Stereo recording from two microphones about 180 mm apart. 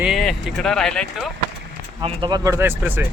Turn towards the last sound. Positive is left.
turn(degrees=-10)  # may be behind; listen again after turning